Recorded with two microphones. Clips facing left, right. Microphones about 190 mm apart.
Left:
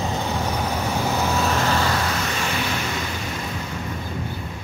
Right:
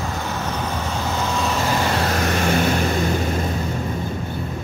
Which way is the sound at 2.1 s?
50° right (ahead or behind).